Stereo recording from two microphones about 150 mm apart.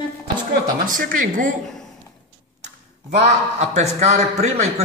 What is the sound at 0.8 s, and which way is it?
Speech, 65° right (ahead or behind).